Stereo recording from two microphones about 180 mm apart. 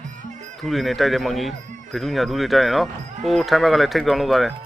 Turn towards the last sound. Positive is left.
turn(degrees=0)  # may be behind; listen again after turning